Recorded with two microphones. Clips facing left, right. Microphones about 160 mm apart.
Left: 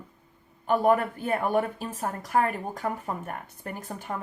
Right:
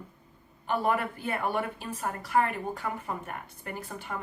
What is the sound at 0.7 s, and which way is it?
A woman's voice, 40° left (ahead or behind).